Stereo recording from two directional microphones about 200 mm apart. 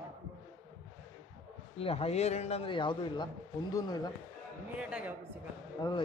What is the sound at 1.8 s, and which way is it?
A man's voice, 30° left (ahead or behind).